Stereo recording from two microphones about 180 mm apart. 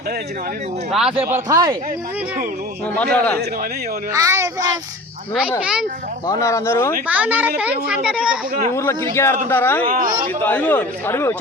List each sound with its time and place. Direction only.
1.2 s speech: 15° right (ahead or behind)
2.9 s speech: 10° left (ahead or behind)
4.1 s a child's voice: 15° right (ahead or behind)
5.5 s speech: 5° right (ahead or behind)
6.2 s speech: 20° left (ahead or behind)
7.1 s a child's voice: 10° right (ahead or behind)
8.7 s speech: 15° left (ahead or behind)
9.9 s speech: 50° right (ahead or behind)
10.4 s speech: 10° left (ahead or behind)